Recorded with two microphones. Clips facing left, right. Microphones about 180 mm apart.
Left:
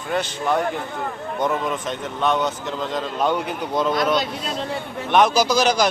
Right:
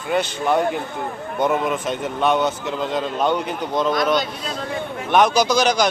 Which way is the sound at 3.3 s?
5° left (ahead or behind).